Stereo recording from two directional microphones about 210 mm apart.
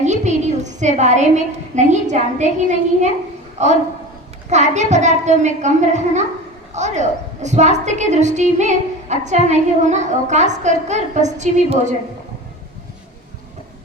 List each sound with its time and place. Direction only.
0.0 s a woman's voice: 35° right (ahead or behind)